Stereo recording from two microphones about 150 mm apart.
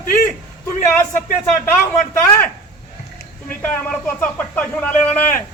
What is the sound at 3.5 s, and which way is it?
A man's voice, 10° left (ahead or behind).